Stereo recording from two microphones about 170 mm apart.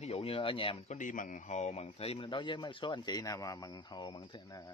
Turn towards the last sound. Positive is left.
turn(degrees=20)  # may be behind; listen again after turning